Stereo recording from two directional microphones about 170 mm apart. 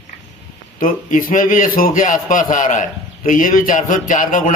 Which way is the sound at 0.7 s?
50° left (ahead or behind).